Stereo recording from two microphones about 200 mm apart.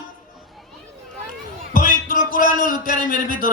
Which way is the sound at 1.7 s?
45° left (ahead or behind).